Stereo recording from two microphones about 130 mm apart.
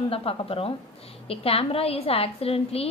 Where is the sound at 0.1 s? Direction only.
45° left (ahead or behind).